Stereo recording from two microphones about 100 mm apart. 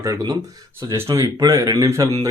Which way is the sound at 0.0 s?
35° right (ahead or behind).